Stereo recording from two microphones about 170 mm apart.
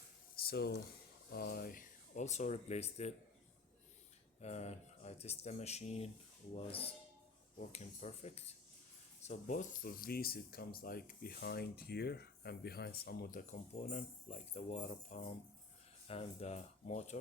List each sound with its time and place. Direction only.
0.3 s a sound: 65° left (ahead or behind)
1.3 s speech: 65° left (ahead or behind); by 3.2 s 40° left (ahead or behind)
4.4 s speech: 40° left (ahead or behind); by 13.4 s 65° left (ahead or behind)
13.5 s speech: 40° left (ahead or behind)